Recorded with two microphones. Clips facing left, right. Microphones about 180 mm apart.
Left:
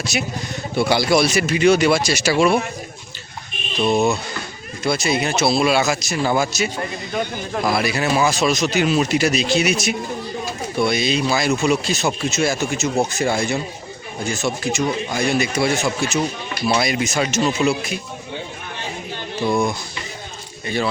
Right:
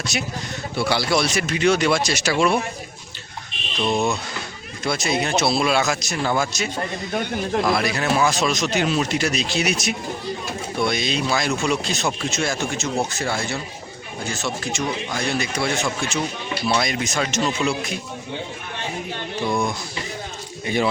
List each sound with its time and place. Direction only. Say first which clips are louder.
0.0 s speech: left 3 dB; 5° left (ahead or behind)
0.8 s speech: left 4 dB; 15° left (ahead or behind)
3.8 s speech: left 4 dB; 5° left (ahead or behind)
19.5 s speech: left 4 dB; centre (ahead or behind)
20.7 s speech: right 1 dB; 15° right (ahead or behind)